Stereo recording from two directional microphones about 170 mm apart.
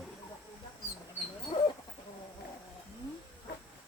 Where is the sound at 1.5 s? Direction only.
40° left (ahead or behind).